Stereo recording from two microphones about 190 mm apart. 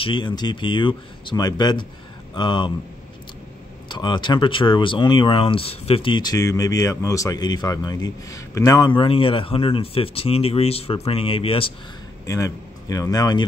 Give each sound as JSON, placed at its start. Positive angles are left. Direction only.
{"t": 0.0, "sound": "speech", "side_deg": 25}
{"t": 3.9, "sound": "speech", "side_deg": 25}
{"t": 12.3, "sound": "speech", "side_deg": 15}